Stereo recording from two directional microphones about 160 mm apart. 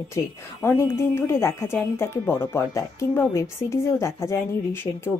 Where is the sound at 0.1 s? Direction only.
15° left (ahead or behind).